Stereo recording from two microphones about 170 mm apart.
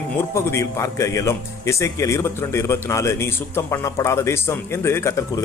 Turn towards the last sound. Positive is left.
turn(degrees=15)  # may be behind; listen again after turning